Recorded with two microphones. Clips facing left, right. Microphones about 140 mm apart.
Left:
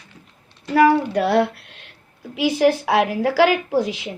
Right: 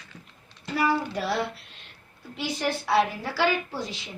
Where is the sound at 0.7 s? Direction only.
70° left (ahead or behind).